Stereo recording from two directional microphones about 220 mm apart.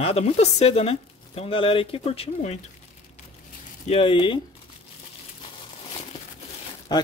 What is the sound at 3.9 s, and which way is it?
Speech, 25° left (ahead or behind).